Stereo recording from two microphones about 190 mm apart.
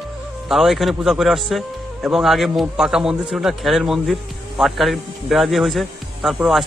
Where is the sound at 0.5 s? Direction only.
Centre (ahead or behind).